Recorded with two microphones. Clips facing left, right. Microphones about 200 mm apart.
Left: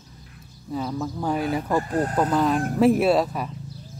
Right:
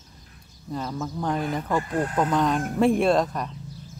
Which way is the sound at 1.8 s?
35° left (ahead or behind).